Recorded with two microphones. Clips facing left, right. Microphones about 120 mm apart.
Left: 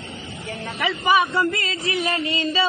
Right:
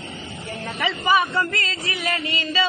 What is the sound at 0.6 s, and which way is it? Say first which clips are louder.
A man's voice: left 1 dB; centre (ahead or behind).